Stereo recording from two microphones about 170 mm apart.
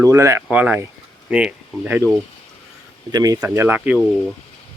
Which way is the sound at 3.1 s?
25° right (ahead or behind).